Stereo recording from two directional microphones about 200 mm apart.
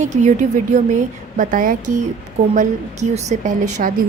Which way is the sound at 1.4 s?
40° right (ahead or behind).